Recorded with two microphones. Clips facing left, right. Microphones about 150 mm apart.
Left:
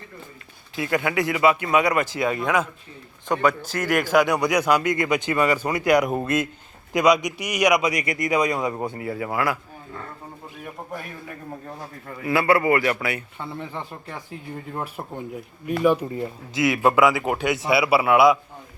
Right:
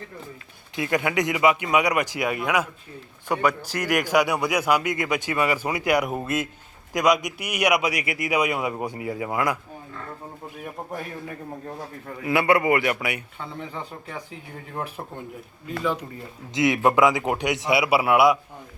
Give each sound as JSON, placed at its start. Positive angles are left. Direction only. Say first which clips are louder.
{"t": 0.8, "sound": "speech", "louder": "even", "side_deg": -20}
{"t": 12.2, "sound": "a man's voice", "louder": "left 1 dB", "side_deg": -20}
{"t": 13.4, "sound": "speech", "louder": "left 2 dB", "side_deg": 0}
{"t": 16.6, "sound": "speech", "louder": "even", "side_deg": -20}